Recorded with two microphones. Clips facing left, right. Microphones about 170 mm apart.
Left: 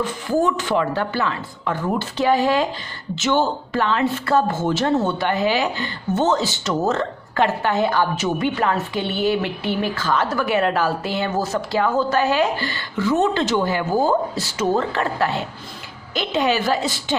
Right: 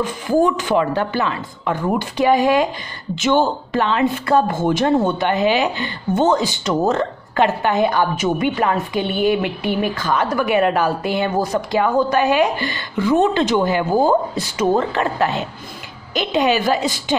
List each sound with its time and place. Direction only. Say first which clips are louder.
0.0 s a woman's voice: right 3 dB; 15° right (ahead or behind)